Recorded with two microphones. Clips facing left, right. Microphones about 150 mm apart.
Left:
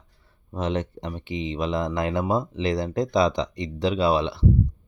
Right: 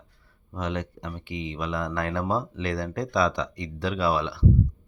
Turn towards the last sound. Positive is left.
turn(degrees=20)  # may be behind; listen again after turning